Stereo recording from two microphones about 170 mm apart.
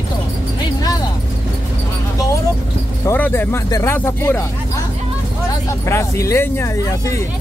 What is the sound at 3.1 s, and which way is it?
Speech, 10° left (ahead or behind).